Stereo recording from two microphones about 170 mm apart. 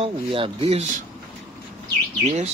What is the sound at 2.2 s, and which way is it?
Speech, 40° right (ahead or behind).